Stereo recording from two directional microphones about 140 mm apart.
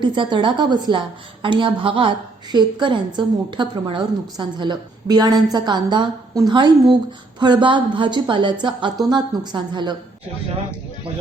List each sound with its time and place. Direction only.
0.0 s a woman's voice: 35° right (ahead or behind)